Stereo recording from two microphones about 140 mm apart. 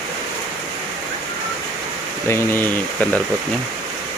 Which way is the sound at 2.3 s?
15° left (ahead or behind).